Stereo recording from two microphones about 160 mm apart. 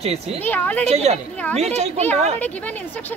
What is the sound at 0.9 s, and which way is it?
A child's voice, 40° right (ahead or behind).